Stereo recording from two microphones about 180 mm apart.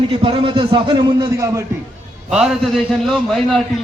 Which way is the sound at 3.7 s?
Centre (ahead or behind).